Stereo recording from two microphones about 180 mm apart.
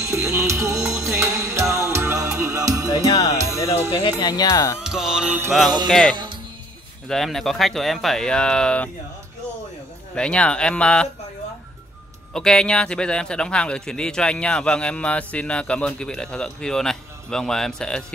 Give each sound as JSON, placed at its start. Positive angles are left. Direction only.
{"t": 0.0, "sound": "music", "side_deg": -15}
{"t": 3.6, "sound": "speech", "side_deg": 20}
{"t": 4.7, "sound": "a man's voice", "side_deg": 0}
{"t": 10.1, "sound": "a man's voice", "side_deg": 5}
{"t": 12.4, "sound": "a man's voice", "side_deg": 5}